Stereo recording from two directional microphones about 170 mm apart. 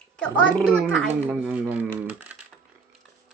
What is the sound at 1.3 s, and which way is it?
Speech, 10° right (ahead or behind).